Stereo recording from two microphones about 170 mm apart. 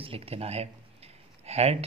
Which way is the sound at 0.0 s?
35° right (ahead or behind).